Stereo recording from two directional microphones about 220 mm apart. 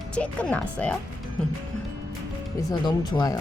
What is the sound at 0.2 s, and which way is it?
Speech, 5° left (ahead or behind).